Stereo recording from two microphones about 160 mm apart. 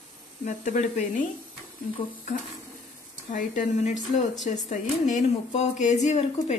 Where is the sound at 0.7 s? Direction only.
50° left (ahead or behind).